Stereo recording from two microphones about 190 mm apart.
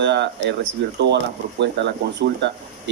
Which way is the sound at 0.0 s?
65° right (ahead or behind).